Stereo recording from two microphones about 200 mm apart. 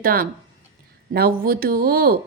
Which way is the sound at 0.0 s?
45° right (ahead or behind).